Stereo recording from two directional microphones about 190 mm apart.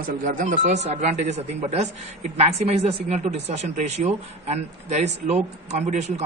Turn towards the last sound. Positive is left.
turn(degrees=-35)  # may be behind; listen again after turning